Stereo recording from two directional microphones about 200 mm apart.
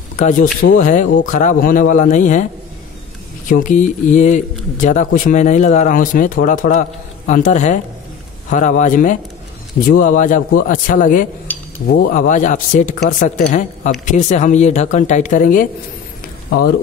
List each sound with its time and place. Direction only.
0.2 s speech: 40° left (ahead or behind)
3.4 s speech: 40° left (ahead or behind)